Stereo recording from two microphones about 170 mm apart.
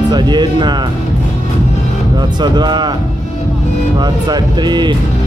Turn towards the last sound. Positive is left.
turn(degrees=-25)  # may be behind; listen again after turning